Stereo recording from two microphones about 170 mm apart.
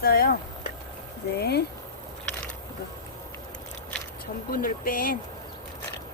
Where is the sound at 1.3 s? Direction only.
70° left (ahead or behind).